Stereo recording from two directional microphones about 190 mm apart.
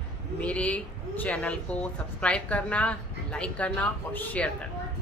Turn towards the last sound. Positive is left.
turn(degrees=10)  # may be behind; listen again after turning